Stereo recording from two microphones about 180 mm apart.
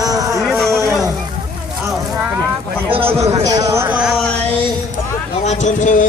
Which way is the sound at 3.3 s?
20° right (ahead or behind).